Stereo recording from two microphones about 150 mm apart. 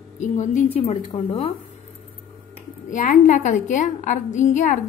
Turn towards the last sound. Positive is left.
turn(degrees=55)  # may be behind; listen again after turning